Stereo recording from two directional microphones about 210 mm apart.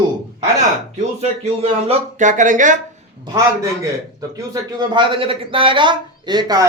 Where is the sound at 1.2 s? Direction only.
30° right (ahead or behind).